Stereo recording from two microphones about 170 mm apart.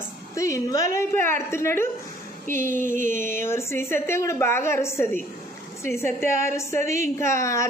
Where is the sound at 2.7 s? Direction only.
50° right (ahead or behind).